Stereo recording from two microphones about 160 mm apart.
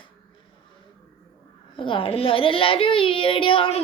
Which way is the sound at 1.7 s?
30° left (ahead or behind).